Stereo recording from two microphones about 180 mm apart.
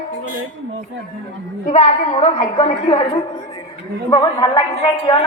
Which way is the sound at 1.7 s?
40° left (ahead or behind).